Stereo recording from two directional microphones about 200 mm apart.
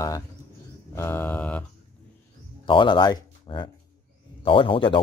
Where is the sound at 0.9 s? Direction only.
10° left (ahead or behind).